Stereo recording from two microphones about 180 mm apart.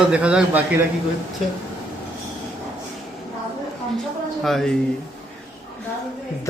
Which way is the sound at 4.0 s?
Centre (ahead or behind).